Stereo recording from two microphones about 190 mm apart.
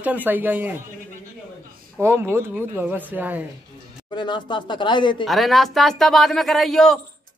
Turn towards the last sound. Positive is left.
turn(degrees=0)  # may be behind; listen again after turning